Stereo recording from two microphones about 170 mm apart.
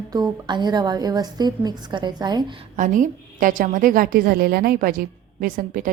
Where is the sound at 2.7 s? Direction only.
50° right (ahead or behind).